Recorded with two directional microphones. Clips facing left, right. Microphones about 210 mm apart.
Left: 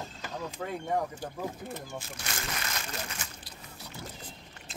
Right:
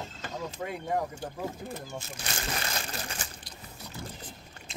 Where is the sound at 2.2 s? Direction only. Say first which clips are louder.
Right 5 dB; 30° right (ahead or behind).